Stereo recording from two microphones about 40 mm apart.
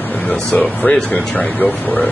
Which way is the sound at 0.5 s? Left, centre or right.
Left.